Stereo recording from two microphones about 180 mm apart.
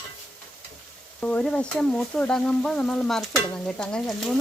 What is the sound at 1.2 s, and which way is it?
Frying, 5° left (ahead or behind).